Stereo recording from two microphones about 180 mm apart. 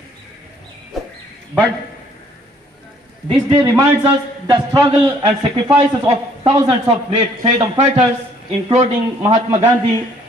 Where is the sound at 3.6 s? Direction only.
20° right (ahead or behind).